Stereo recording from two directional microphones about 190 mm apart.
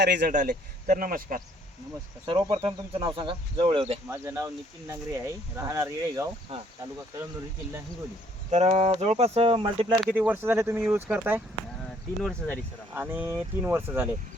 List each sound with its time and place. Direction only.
0.0 s a man's voice: 60° right (ahead or behind)
0.3 s speech: 45° right (ahead or behind)
2.2 s speech: 25° right (ahead or behind)
4.1 s speech: 15° right (ahead or behind)
8.4 s speech: 35° right (ahead or behind)
10.0 s speech: 5° right (ahead or behind)
12.2 s speech: 5° left (ahead or behind)
12.9 s speech: 10° right (ahead or behind)